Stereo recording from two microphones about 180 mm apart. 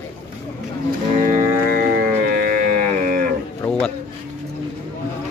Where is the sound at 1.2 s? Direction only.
50° right (ahead or behind).